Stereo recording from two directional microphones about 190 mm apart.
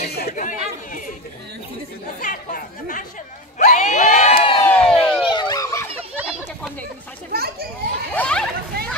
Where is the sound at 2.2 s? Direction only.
40° left (ahead or behind).